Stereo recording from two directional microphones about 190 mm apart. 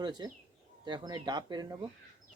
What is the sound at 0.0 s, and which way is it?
Speech, 25° right (ahead or behind).